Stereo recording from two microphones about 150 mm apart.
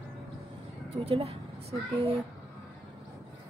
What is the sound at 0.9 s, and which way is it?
Speech, 40° right (ahead or behind).